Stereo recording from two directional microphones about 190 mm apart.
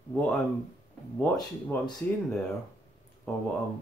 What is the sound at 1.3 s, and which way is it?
Speech, 20° left (ahead or behind).